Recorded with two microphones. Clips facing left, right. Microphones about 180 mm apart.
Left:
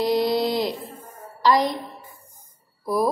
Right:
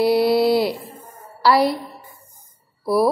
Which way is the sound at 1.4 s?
10° right (ahead or behind).